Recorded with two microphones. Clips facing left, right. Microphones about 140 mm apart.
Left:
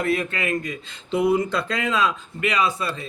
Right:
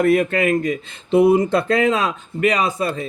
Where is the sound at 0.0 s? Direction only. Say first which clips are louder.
Right 8 dB; 50° right (ahead or behind).